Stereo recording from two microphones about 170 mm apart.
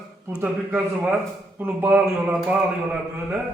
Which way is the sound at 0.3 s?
10° right (ahead or behind).